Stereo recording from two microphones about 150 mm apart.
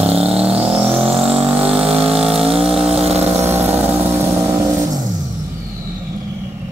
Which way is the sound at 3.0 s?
45° right (ahead or behind).